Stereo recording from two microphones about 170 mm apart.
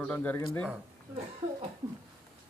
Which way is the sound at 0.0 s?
10° left (ahead or behind).